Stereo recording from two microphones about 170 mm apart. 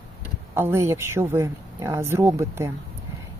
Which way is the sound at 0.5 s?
15° right (ahead or behind).